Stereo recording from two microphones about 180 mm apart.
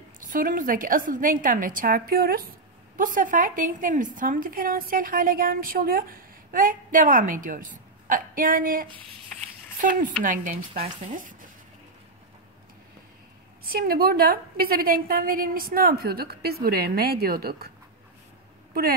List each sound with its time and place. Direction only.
0.2 s a woman's voice: 50° right (ahead or behind)
13.7 s a woman's voice: 55° right (ahead or behind)